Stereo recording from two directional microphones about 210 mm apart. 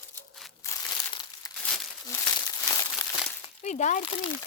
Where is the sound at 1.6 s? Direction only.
5° left (ahead or behind).